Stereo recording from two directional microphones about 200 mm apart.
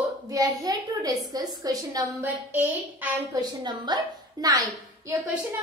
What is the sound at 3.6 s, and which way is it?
A woman's voice, 20° right (ahead or behind).